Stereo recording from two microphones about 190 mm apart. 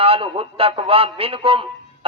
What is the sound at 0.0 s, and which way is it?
A man's voice, 30° right (ahead or behind).